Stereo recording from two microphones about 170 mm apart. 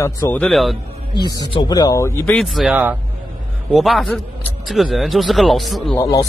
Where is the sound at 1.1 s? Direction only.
25° left (ahead or behind); by 5.9 s centre (ahead or behind).